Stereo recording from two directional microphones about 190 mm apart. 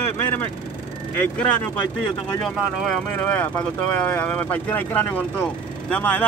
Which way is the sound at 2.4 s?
5° left (ahead or behind).